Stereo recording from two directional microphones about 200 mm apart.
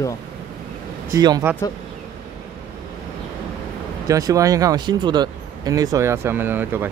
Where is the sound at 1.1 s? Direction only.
20° right (ahead or behind).